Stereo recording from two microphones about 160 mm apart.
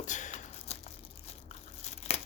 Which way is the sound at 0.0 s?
50° left (ahead or behind).